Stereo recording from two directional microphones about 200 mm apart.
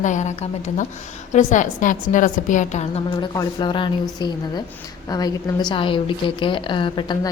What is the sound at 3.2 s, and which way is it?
A woman's voice, 20° left (ahead or behind).